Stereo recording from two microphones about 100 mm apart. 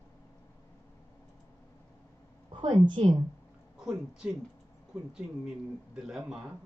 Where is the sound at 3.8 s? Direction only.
5° right (ahead or behind).